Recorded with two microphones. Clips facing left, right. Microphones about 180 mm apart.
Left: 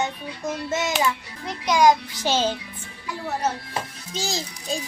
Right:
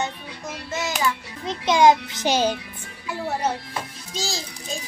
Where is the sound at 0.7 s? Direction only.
25° left (ahead or behind).